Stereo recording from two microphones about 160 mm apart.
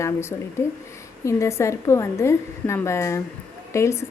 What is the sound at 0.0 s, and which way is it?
A woman's voice, 15° left (ahead or behind).